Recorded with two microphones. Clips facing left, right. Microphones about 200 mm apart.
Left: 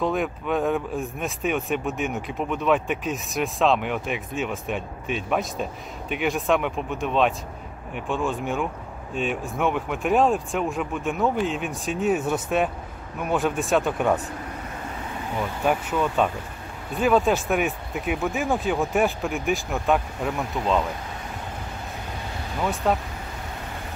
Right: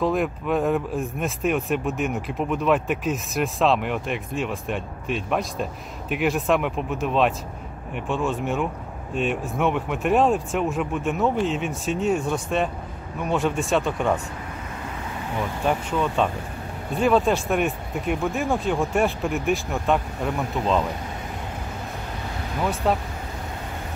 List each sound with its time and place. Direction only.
0.0 s speech: centre (ahead or behind)
15.6 s speech: 5° left (ahead or behind)
22.8 s speech: centre (ahead or behind)